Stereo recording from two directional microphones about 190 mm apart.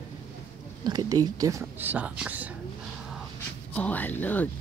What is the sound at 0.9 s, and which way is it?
Speech, 20° right (ahead or behind).